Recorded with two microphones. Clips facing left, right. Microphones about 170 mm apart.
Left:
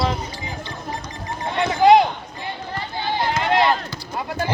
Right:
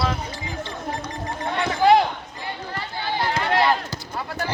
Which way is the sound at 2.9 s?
20° left (ahead or behind).